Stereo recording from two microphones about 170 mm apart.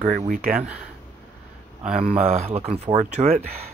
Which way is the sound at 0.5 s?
5° right (ahead or behind).